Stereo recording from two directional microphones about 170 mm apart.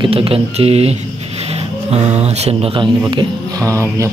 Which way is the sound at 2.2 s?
40° right (ahead or behind).